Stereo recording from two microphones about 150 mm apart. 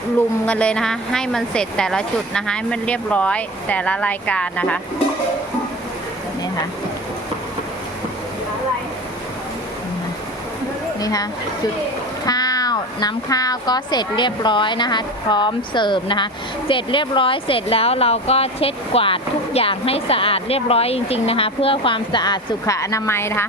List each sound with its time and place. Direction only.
0.4 s speech: 10° left (ahead or behind)
11.0 s a woman's voice: 25° left (ahead or behind)